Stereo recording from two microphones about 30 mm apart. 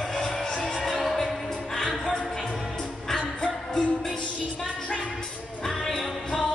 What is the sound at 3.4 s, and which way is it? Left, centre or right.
Music, left.